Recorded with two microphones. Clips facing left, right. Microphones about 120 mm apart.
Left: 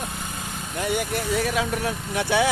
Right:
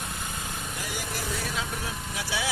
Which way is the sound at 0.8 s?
60° left (ahead or behind).